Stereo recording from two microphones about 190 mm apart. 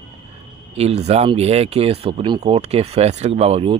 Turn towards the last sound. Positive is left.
turn(degrees=-30)  # may be behind; listen again after turning